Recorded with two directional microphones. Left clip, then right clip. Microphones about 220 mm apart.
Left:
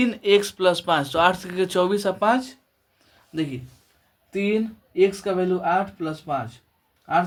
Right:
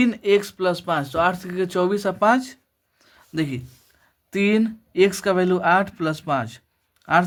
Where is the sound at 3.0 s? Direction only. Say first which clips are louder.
Right 2 dB; 25° right (ahead or behind).